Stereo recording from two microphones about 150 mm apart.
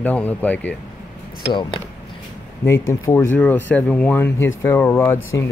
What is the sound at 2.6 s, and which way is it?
Speech, 20° left (ahead or behind).